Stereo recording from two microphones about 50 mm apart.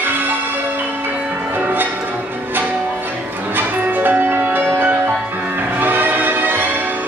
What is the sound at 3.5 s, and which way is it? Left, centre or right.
Music, right.